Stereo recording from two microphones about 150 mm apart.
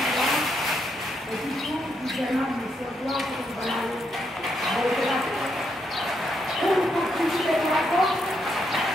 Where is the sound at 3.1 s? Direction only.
Centre (ahead or behind).